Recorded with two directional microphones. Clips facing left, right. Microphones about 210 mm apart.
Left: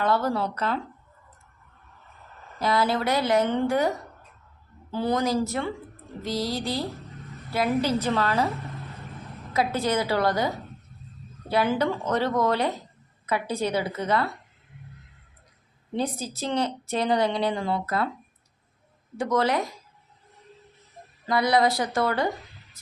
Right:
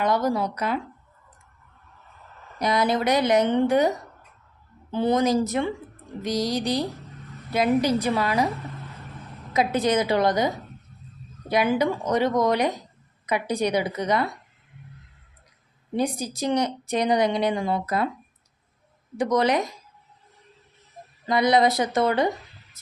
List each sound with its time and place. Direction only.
0.0 s a woman's voice: 15° right (ahead or behind)
2.6 s a woman's voice: 20° right (ahead or behind)
9.5 s a woman's voice: 20° right (ahead or behind)
16.0 s a woman's voice: 15° right (ahead or behind)
19.1 s a woman's voice: 20° right (ahead or behind)
21.2 s a woman's voice: 20° right (ahead or behind)